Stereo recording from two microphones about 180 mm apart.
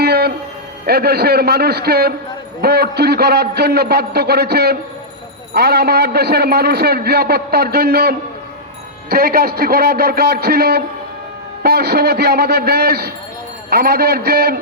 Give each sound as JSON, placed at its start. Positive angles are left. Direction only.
{"t": 0.0, "sound": "music", "side_deg": -60}
{"t": 0.9, "sound": "a man's voice", "side_deg": -60}